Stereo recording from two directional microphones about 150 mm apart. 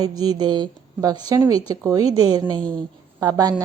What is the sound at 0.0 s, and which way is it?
A woman's voice, 25° right (ahead or behind).